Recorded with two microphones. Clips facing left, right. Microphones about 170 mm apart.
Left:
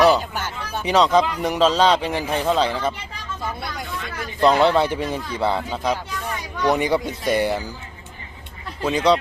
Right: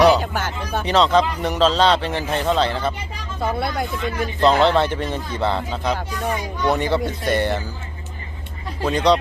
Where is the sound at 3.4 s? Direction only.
60° right (ahead or behind).